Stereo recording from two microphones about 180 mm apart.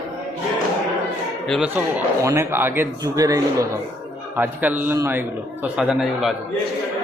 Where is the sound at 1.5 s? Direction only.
5° right (ahead or behind).